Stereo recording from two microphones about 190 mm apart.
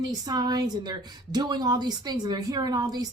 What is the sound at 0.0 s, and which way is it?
A woman's voice, 20° right (ahead or behind).